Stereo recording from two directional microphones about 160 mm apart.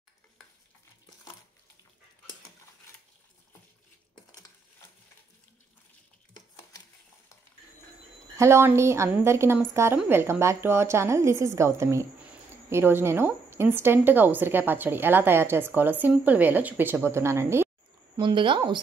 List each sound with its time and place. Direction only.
8.4 s a woman's voice: 15° right (ahead or behind)
18.1 s speech: 30° right (ahead or behind)